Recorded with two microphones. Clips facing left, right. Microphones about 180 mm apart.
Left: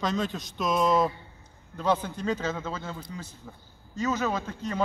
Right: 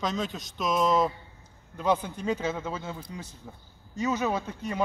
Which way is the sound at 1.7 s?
10° right (ahead or behind).